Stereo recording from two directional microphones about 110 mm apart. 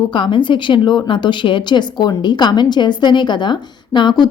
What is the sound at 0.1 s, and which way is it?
Speech, 45° left (ahead or behind).